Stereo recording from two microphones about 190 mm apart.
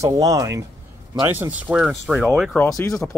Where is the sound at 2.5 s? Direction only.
10° left (ahead or behind).